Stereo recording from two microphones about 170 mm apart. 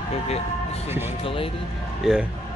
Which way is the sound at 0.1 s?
35° left (ahead or behind).